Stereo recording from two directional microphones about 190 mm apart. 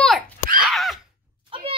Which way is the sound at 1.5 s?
30° right (ahead or behind).